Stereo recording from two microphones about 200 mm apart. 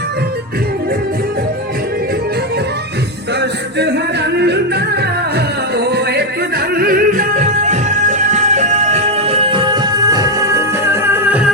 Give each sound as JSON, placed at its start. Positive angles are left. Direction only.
{"t": 3.8, "sound": "yodeling", "side_deg": -55}
{"t": 5.7, "sound": "music", "side_deg": -55}